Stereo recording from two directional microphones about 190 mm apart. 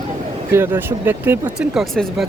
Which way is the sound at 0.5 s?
10° right (ahead or behind).